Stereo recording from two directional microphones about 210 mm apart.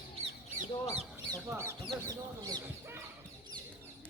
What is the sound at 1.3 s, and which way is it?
Speech, 10° right (ahead or behind).